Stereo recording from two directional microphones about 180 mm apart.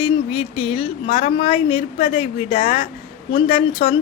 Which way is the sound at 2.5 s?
45° left (ahead or behind).